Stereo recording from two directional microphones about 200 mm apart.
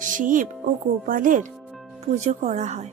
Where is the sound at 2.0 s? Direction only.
35° right (ahead or behind).